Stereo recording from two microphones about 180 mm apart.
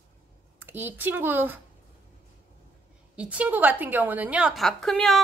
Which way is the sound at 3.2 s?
5° right (ahead or behind).